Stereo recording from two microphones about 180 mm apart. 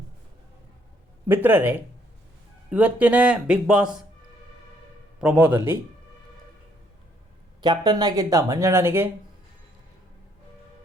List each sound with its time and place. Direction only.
1.3 s speech: 10° right (ahead or behind)
5.2 s speech: 5° right (ahead or behind)
7.6 s speech: 25° right (ahead or behind)